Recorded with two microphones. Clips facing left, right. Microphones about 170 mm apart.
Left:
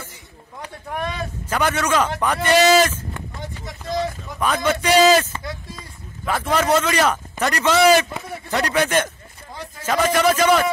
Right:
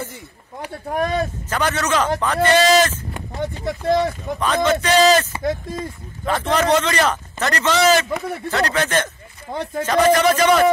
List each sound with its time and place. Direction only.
0.8 s speech: 40° right (ahead or behind)
1.5 s a man's voice: 10° left (ahead or behind)
3.6 s speech: 60° right (ahead or behind)
4.4 s a man's voice: 10° left (ahead or behind)
5.4 s speech: 50° right (ahead or behind)
6.2 s a man's voice: 10° left (ahead or behind)
9.5 s speech: 60° right (ahead or behind)
10.1 s a man's voice: 5° left (ahead or behind)